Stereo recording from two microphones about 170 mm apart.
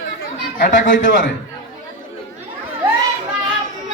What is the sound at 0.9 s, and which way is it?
Speech, 50° left (ahead or behind).